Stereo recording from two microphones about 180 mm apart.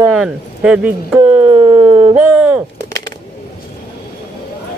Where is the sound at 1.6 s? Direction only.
30° right (ahead or behind).